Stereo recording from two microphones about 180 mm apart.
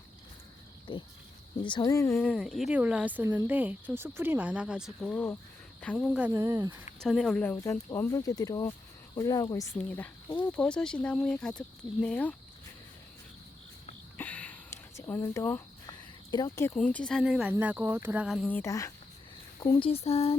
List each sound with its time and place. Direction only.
0.9 s speech: 30° left (ahead or behind)
2.1 s speech: centre (ahead or behind)
6.0 s speech: 5° right (ahead or behind)
7.0 s speech: centre (ahead or behind)
14.2 s throat clearing: 10° left (ahead or behind)
15.9 s a sound: 20° left (ahead or behind)
16.7 s speech: 5° left (ahead or behind)
18.4 s speech: 15° left (ahead or behind)
19.5 s speech: 30° left (ahead or behind)